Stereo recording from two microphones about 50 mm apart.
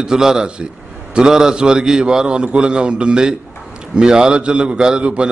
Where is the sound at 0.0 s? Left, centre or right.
Centre.